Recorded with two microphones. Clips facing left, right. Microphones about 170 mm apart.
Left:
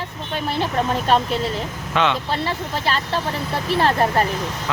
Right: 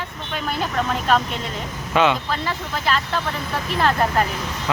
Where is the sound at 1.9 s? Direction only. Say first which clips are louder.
Right 2 dB; 5° right (ahead or behind).